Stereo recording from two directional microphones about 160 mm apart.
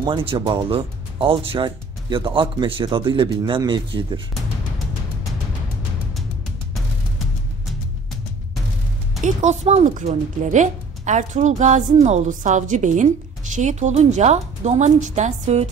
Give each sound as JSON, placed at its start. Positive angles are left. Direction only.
{"t": 0.0, "sound": "speech", "side_deg": -30}
{"t": 9.2, "sound": "speech", "side_deg": -50}